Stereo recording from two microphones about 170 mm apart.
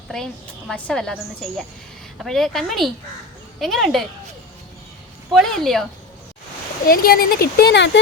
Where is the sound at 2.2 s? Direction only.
Centre (ahead or behind).